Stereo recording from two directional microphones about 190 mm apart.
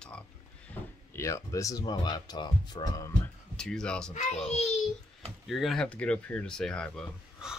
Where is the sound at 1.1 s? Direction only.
15° left (ahead or behind).